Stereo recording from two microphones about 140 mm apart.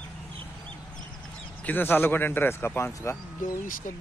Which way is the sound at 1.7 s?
15° left (ahead or behind).